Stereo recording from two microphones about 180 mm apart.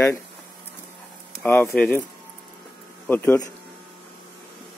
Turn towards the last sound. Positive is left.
turn(degrees=10)  # may be behind; listen again after turning